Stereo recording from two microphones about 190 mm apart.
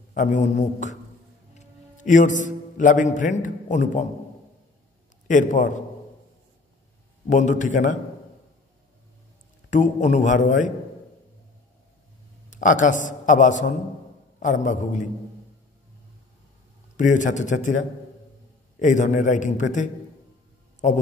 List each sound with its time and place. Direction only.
0.1 s a man's voice: 40° left (ahead or behind)
5.3 s a man's voice: 40° left (ahead or behind)
7.2 s a man's voice: 40° left (ahead or behind)
9.7 s a man's voice: 40° left (ahead or behind)
12.4 s a man's voice: 40° left (ahead or behind)
16.9 s a man's voice: 40° left (ahead or behind)